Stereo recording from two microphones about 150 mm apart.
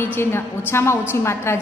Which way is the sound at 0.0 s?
15° left (ahead or behind).